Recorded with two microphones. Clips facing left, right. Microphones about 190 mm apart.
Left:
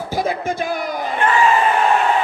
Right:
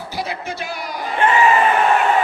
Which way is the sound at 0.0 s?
50° left (ahead or behind).